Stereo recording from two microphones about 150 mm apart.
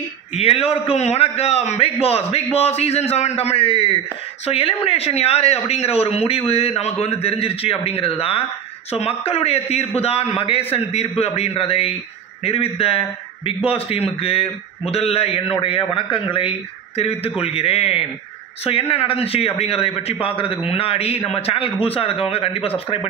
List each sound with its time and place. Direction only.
0.3 s a man's voice: 45° left (ahead or behind)